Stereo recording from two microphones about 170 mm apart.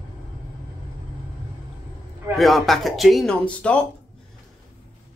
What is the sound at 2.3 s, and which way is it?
Speech, centre (ahead or behind).